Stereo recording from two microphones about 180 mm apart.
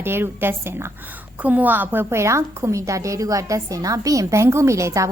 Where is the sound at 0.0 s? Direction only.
10° right (ahead or behind).